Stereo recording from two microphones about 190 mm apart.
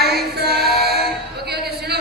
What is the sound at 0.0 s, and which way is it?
Female singing, 55° right (ahead or behind).